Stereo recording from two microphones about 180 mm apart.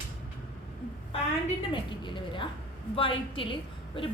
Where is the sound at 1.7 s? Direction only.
30° left (ahead or behind).